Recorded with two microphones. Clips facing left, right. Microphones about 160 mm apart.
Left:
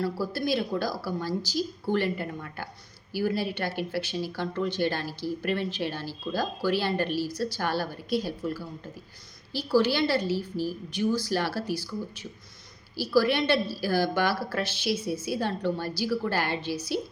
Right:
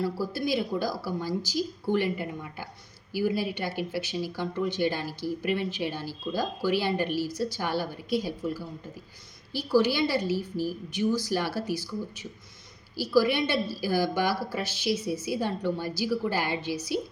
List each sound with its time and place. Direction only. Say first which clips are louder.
0.0 s speech: even; 15° right (ahead or behind)
13.0 s speech: even; 15° right (ahead or behind)